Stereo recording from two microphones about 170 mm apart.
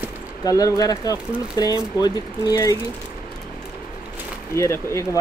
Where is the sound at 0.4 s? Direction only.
20° left (ahead or behind).